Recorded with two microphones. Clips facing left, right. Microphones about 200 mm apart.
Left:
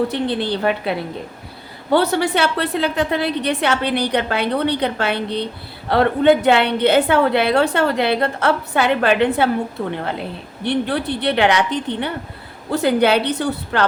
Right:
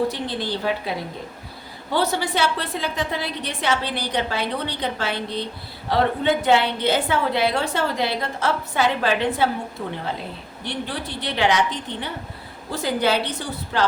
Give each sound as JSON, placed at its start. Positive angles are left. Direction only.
{"t": 0.1, "sound": "a woman's voice", "side_deg": 65}